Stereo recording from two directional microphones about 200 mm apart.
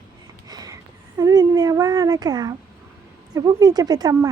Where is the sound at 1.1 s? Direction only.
20° right (ahead or behind).